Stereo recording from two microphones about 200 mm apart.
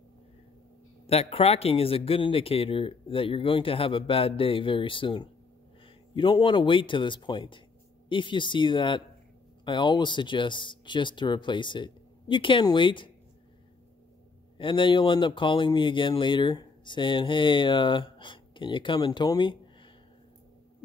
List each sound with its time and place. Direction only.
1.0 s speech: 30° left (ahead or behind)
14.6 s speech: 25° left (ahead or behind)